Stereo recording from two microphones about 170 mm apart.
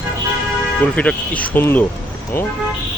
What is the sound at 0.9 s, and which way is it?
Speech, 5° left (ahead or behind).